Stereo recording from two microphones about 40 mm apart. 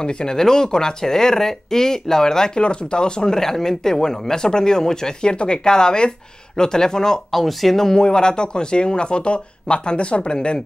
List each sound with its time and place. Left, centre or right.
0.0 s speech: centre
7.2 s speech: centre; by 10.6 s left